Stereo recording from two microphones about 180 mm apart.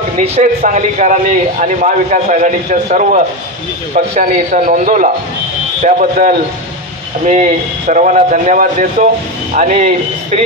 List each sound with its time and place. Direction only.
0.2 s a man's voice: 40° right (ahead or behind)